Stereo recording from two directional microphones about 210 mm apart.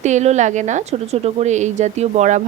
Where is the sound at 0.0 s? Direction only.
35° right (ahead or behind).